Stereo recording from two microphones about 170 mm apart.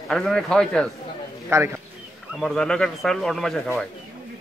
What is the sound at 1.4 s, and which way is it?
Speech, 15° right (ahead or behind).